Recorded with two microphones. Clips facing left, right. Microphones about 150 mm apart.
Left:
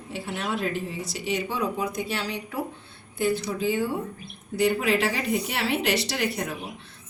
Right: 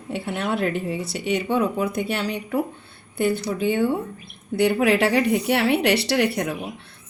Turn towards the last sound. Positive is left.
turn(degrees=-65)  # may be behind; listen again after turning